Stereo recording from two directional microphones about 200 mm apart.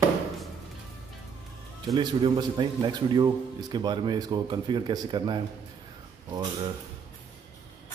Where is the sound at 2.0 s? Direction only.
20° right (ahead or behind).